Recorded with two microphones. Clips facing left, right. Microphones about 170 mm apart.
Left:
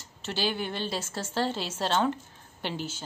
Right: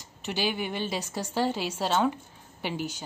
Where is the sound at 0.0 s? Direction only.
15° right (ahead or behind).